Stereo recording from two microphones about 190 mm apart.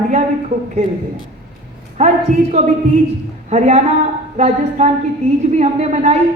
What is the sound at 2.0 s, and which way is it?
A woman's voice, 40° right (ahead or behind).